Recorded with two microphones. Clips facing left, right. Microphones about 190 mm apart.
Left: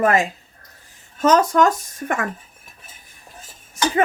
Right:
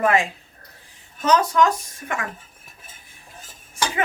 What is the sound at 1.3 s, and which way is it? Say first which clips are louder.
Speech: left 3 dB; 45° left (ahead or behind).